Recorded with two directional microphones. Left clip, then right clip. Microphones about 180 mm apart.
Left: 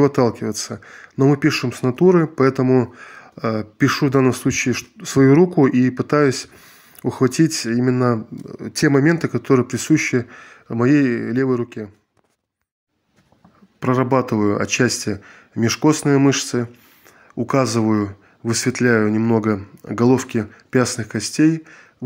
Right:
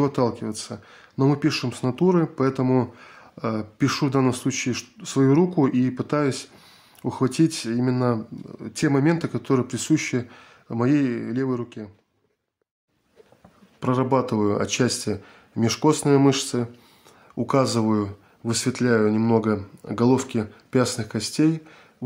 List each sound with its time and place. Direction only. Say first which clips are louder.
0.0 s speech: left 6 dB; 20° left (ahead or behind)
2.6 s speech: left 5 dB; 10° left (ahead or behind)
13.7 s speech: left 4 dB; 15° left (ahead or behind)